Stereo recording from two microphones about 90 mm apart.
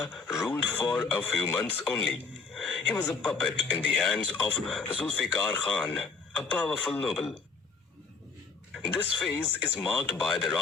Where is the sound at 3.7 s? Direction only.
5° left (ahead or behind).